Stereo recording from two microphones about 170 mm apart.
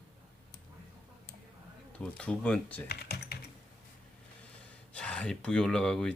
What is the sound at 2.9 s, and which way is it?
Speech, 70° left (ahead or behind).